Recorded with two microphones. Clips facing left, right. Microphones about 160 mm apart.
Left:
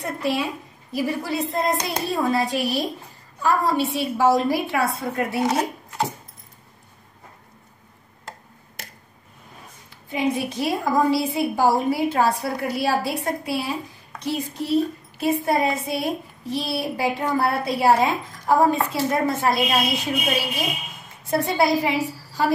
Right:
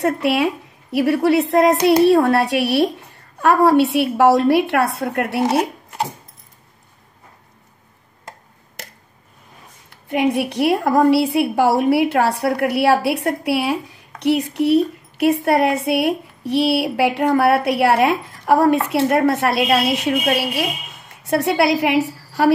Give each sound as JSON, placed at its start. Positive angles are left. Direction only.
{"t": 0.0, "sound": "a woman's voice", "side_deg": -70}
{"t": 9.8, "sound": "a woman's voice", "side_deg": -65}